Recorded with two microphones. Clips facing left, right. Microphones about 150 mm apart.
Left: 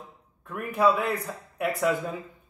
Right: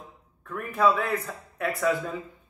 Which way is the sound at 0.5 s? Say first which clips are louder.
Even; 15° left (ahead or behind).